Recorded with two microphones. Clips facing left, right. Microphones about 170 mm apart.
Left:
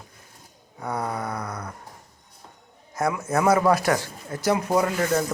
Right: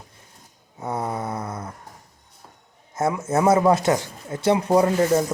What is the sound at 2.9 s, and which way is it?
Speech, 25° right (ahead or behind).